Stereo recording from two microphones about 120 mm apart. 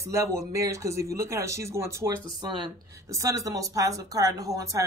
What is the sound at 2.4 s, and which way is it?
Speech, 40° right (ahead or behind).